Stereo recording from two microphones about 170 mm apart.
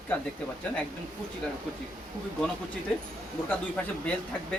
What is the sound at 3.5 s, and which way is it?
Speech, 10° left (ahead or behind).